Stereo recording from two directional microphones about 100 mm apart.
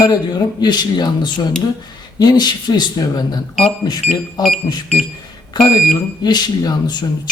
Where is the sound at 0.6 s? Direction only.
45° left (ahead or behind).